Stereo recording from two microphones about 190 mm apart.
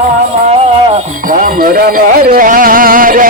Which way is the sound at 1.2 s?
45° right (ahead or behind).